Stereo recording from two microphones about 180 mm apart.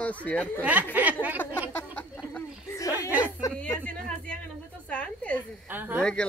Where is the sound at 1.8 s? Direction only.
10° left (ahead or behind).